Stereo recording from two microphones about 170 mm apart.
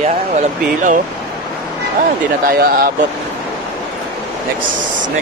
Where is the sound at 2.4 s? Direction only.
65° right (ahead or behind).